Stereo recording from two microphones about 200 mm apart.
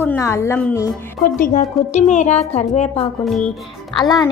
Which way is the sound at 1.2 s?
40° left (ahead or behind).